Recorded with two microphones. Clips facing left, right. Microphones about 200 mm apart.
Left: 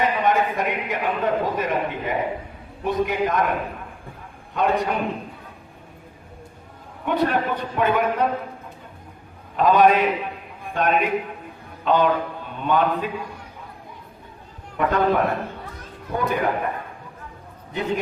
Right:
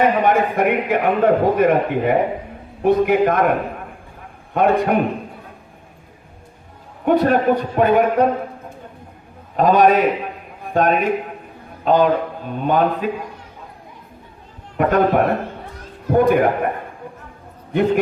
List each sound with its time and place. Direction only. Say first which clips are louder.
0.0 s a man's voice: right 5 dB; 55° right (ahead or behind)
4.5 s a man's voice: right 6 dB; 55° right (ahead or behind)
7.0 s a man's voice: right 7 dB; 45° right (ahead or behind)
9.6 s a man's voice: right 3 dB; 45° right (ahead or behind)
14.8 s a man's voice: right 4 dB; 50° right (ahead or behind)